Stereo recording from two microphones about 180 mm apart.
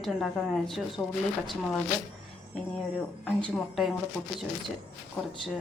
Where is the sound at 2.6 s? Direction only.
5° left (ahead or behind).